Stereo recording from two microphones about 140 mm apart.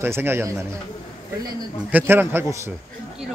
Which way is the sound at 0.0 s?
15° right (ahead or behind).